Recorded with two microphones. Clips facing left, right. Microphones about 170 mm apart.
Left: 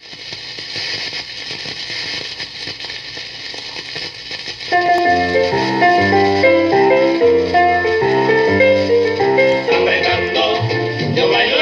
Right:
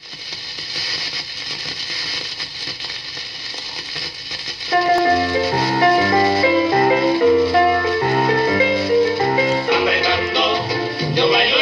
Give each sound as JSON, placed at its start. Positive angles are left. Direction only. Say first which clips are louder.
{"t": 4.6, "sound": "music", "louder": "left 2 dB", "side_deg": 25}